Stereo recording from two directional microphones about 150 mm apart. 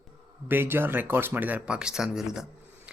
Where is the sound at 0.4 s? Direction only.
15° right (ahead or behind).